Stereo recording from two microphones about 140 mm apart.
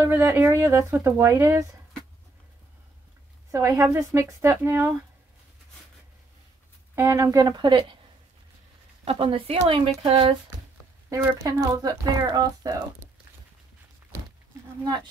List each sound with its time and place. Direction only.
0.1 s speech: 20° right (ahead or behind)
3.5 s speech: 20° right (ahead or behind)
7.0 s speech: 20° right (ahead or behind)
9.0 s speech: 40° right (ahead or behind)
11.1 s speech: 25° right (ahead or behind)